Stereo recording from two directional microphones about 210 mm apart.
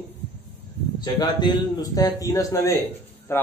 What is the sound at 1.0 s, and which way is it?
Speech, 20° left (ahead or behind).